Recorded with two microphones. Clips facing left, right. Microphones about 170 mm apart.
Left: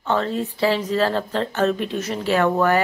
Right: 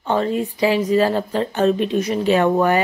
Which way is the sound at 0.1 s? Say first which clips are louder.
Right 3 dB; 15° right (ahead or behind).